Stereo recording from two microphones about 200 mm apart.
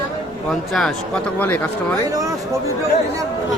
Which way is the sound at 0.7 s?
5° left (ahead or behind).